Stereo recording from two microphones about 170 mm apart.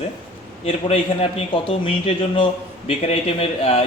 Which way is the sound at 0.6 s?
35° left (ahead or behind).